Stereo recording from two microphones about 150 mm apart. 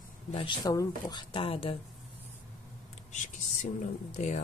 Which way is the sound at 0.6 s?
25° left (ahead or behind).